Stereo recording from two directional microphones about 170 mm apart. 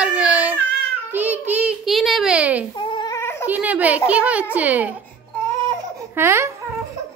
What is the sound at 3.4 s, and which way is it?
A child's voice, 10° right (ahead or behind).